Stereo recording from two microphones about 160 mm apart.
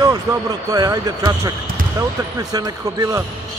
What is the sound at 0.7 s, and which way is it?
Speech, 25° right (ahead or behind).